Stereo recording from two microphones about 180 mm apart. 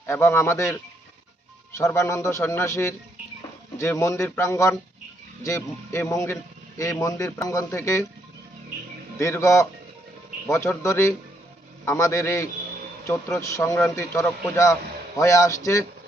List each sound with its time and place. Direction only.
0.0 s a man's voice: 15° left (ahead or behind)
1.8 s a man's voice: 15° left (ahead or behind)
9.1 s a man's voice: 15° left (ahead or behind)